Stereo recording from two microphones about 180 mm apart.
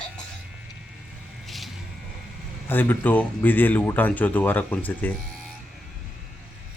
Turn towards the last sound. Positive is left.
turn(degrees=10)  # may be behind; listen again after turning